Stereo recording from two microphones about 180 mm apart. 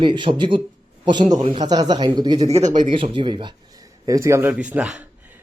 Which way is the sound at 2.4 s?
35° right (ahead or behind).